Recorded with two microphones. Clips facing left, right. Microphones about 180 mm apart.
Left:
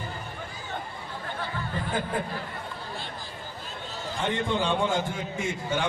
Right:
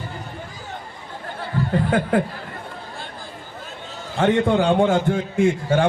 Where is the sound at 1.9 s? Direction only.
75° right (ahead or behind).